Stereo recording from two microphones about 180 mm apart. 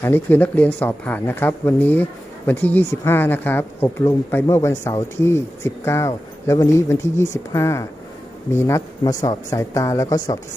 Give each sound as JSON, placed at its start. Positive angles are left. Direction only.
{"t": 0.0, "sound": "speech", "side_deg": 10}